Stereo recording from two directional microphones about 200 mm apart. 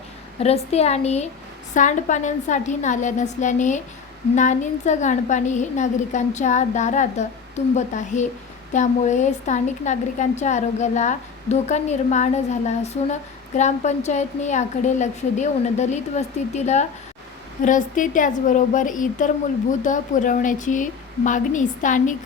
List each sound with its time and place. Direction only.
0.3 s a woman's voice: 30° left (ahead or behind)